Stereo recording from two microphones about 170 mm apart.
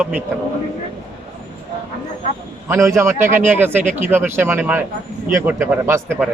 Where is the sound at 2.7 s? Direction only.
15° right (ahead or behind).